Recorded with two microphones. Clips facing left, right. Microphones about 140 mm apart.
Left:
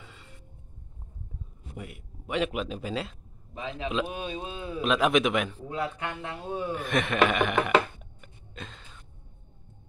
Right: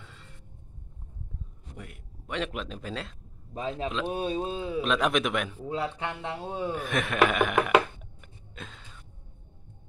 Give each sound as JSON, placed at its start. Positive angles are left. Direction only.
{"t": 0.0, "sound": "music", "side_deg": 5}
{"t": 1.8, "sound": "speech", "side_deg": 10}
{"t": 3.5, "sound": "speech", "side_deg": -40}
{"t": 4.6, "sound": "a man's voice", "side_deg": -20}
{"t": 4.8, "sound": "speech", "side_deg": 5}
{"t": 5.7, "sound": "a man's voice", "side_deg": -25}
{"t": 6.7, "sound": "speech", "side_deg": 0}
{"t": 8.2, "sound": "a sound", "side_deg": 0}